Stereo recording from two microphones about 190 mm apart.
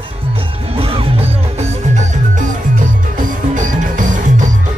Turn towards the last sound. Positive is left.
turn(degrees=-40)  # may be behind; listen again after turning